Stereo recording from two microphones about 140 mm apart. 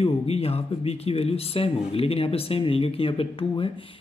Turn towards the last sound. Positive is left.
turn(degrees=40)  # may be behind; listen again after turning